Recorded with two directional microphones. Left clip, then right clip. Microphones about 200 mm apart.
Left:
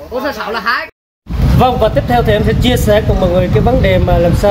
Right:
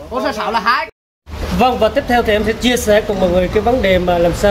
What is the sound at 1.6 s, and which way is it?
Speech, centre (ahead or behind).